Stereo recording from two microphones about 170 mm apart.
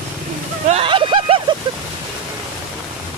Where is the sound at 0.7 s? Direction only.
35° right (ahead or behind).